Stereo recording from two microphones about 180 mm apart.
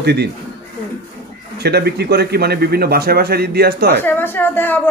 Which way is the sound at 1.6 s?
65° right (ahead or behind).